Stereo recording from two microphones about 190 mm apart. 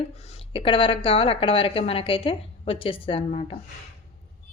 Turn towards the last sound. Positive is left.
turn(degrees=30)  # may be behind; listen again after turning